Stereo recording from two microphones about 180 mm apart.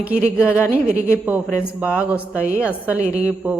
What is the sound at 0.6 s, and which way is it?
Speech, 10° left (ahead or behind).